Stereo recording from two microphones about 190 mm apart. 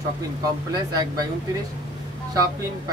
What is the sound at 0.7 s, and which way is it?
Speech, 20° right (ahead or behind).